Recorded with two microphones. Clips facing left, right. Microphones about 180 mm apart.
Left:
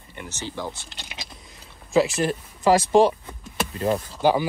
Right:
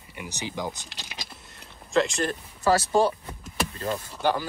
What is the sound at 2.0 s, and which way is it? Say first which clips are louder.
Speech: left 4 dB; 5° left (ahead or behind).